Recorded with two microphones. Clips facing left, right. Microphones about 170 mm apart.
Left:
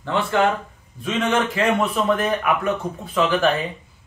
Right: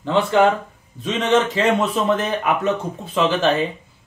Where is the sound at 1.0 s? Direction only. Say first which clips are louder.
Right 3 dB; 25° right (ahead or behind).